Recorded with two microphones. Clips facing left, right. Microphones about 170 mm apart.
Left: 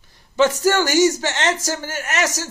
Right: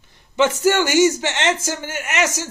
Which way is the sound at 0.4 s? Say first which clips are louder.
Even; 40° left (ahead or behind).